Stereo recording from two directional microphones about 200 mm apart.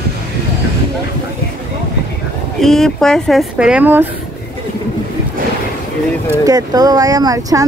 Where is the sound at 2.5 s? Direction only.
Centre (ahead or behind).